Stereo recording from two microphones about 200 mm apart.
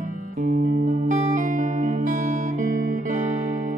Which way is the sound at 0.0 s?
40° right (ahead or behind).